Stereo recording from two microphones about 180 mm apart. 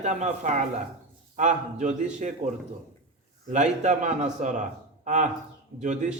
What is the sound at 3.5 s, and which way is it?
A man's voice, 40° right (ahead or behind).